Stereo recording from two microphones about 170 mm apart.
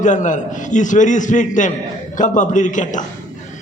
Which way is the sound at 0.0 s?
45° left (ahead or behind).